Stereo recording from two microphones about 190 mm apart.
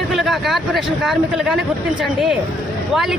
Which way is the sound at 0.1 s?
Centre (ahead or behind).